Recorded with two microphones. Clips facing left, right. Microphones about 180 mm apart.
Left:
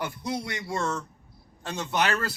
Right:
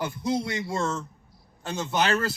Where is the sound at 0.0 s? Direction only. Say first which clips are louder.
Right 4 dB; 20° right (ahead or behind).